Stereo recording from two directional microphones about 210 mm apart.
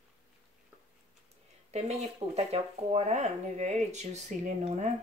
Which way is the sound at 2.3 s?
30° right (ahead or behind).